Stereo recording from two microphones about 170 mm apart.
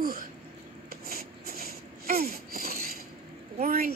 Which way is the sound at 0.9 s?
65° right (ahead or behind).